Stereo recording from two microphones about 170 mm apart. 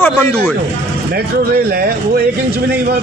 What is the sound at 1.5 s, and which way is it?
Speech, 65° right (ahead or behind).